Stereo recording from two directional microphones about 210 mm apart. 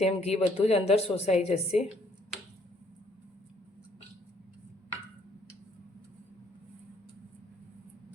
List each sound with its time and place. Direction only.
0.0 s a woman's voice: 30° left (ahead or behind)